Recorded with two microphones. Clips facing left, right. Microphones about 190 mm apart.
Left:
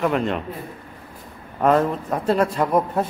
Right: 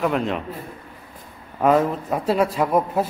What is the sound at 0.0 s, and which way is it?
Speech, centre (ahead or behind).